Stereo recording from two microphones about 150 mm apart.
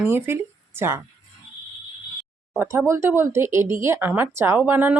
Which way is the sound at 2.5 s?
15° right (ahead or behind).